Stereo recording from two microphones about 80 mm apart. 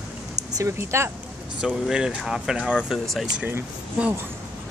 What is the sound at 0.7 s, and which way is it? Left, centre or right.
Speech, right.